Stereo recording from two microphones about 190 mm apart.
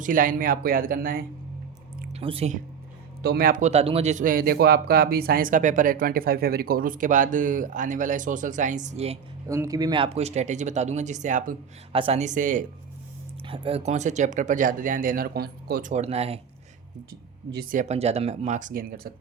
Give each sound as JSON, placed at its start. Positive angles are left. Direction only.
{"t": 0.0, "sound": "a man's voice", "side_deg": -45}
{"t": 2.1, "sound": "speech", "side_deg": -30}
{"t": 3.2, "sound": "a man's voice", "side_deg": -50}
{"t": 9.5, "sound": "speech", "side_deg": -15}
{"t": 11.9, "sound": "speech", "side_deg": -30}
{"t": 13.5, "sound": "speech", "side_deg": -30}
{"t": 17.5, "sound": "a man's voice", "side_deg": -50}